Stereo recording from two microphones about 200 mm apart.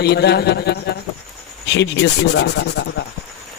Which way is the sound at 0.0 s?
55° left (ahead or behind).